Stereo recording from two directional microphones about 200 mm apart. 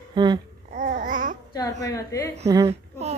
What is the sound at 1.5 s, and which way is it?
Speech, 15° left (ahead or behind).